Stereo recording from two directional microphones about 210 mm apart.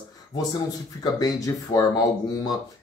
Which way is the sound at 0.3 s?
20° left (ahead or behind).